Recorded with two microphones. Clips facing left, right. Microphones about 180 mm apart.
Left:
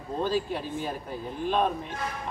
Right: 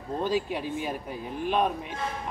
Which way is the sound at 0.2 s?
15° right (ahead or behind).